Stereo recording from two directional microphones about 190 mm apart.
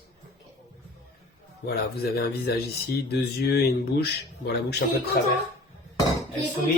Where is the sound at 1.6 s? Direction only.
55° left (ahead or behind).